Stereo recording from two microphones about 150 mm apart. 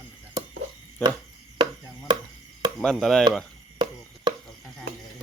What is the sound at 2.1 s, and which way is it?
Chop, 30° right (ahead or behind).